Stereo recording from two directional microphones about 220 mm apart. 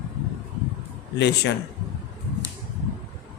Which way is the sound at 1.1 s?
50° left (ahead or behind).